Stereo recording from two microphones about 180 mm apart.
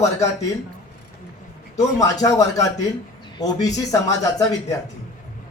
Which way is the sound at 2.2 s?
20° left (ahead or behind).